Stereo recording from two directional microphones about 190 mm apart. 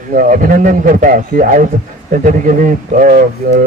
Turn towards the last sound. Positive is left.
turn(degrees=-45)  # may be behind; listen again after turning